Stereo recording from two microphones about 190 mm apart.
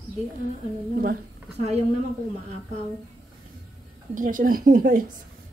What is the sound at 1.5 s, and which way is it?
Speech, 35° right (ahead or behind).